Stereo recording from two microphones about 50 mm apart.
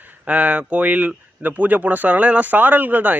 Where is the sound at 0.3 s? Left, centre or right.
Right.